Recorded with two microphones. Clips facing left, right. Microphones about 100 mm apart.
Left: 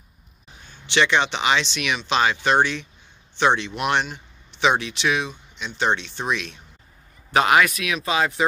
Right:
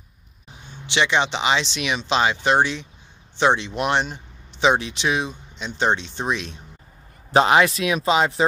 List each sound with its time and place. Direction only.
0.7 s speech: 20° right (ahead or behind)